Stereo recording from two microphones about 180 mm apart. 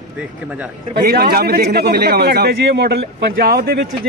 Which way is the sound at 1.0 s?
55° right (ahead or behind).